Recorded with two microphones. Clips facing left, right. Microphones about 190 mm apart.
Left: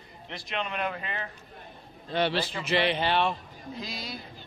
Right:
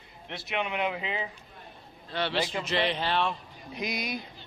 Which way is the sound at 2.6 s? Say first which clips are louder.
Left 2 dB; 5° left (ahead or behind).